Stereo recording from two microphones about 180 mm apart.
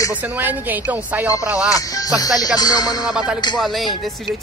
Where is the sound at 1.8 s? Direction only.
20° left (ahead or behind).